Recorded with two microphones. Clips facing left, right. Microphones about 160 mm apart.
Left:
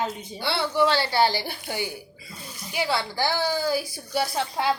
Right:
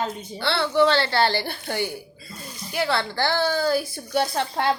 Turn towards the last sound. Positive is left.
turn(degrees=5)  # may be behind; listen again after turning